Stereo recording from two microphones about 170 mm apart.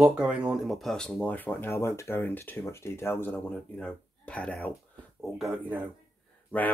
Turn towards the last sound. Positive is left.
turn(degrees=10)  # may be behind; listen again after turning